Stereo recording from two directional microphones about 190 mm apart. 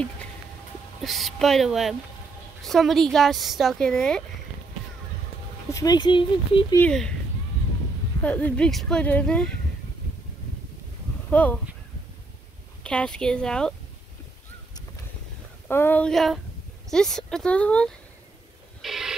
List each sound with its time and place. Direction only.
1.0 s speech: centre (ahead or behind)
5.7 s speech: 20° left (ahead or behind)
6.8 s speech: 5° left (ahead or behind)
8.2 s speech: 5° left (ahead or behind)
11.2 s speech: 5° left (ahead or behind)
12.8 s speech: 5° left (ahead or behind)
15.7 s speech: 10° left (ahead or behind)
18.8 s telephone: centre (ahead or behind)